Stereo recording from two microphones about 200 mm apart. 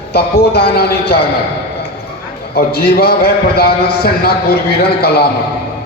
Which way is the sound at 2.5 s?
50° left (ahead or behind).